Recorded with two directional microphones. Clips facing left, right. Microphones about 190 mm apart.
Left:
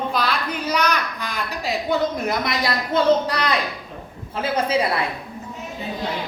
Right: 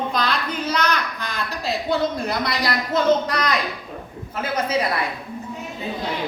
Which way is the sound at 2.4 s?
25° left (ahead or behind).